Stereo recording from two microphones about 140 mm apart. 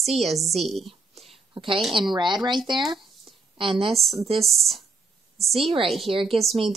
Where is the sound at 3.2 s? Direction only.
40° right (ahead or behind).